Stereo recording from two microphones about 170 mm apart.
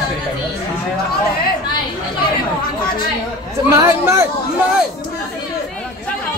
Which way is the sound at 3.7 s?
15° right (ahead or behind).